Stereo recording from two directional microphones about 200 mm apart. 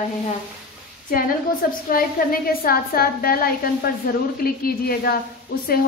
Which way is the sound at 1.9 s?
45° left (ahead or behind).